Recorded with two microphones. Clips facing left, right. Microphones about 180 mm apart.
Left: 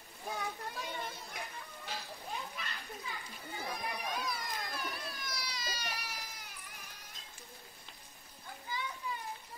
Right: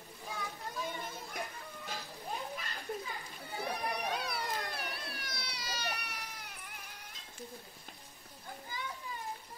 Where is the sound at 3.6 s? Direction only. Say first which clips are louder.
Right 4 dB; 65° right (ahead or behind).